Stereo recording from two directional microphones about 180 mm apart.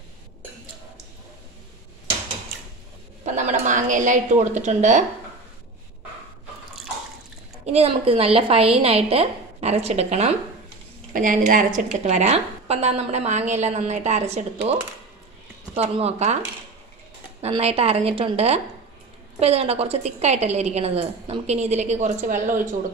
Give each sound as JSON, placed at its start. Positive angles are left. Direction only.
{"t": 3.3, "sound": "a woman's voice", "side_deg": -45}
{"t": 7.6, "sound": "a woman's voice", "side_deg": -35}
{"t": 11.1, "sound": "a woman's voice", "side_deg": -50}
{"t": 15.7, "sound": "a woman's voice", "side_deg": -35}
{"t": 17.4, "sound": "a woman's voice", "side_deg": -35}